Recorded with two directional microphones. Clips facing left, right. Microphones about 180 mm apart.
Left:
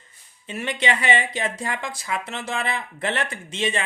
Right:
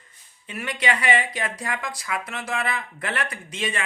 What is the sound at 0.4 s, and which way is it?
Speech, 25° left (ahead or behind).